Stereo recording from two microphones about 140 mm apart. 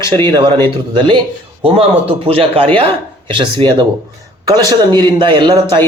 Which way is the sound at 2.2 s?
40° right (ahead or behind).